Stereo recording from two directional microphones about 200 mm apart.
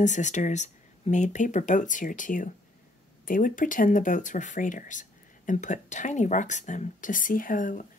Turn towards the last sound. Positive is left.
turn(degrees=40)  # may be behind; listen again after turning